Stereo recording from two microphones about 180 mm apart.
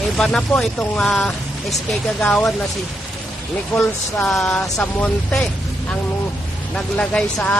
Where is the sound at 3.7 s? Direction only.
5° left (ahead or behind).